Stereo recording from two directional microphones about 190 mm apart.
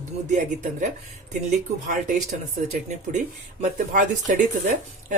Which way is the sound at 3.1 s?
45° right (ahead or behind).